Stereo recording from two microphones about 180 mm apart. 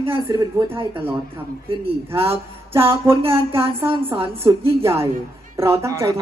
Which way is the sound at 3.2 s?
30° right (ahead or behind).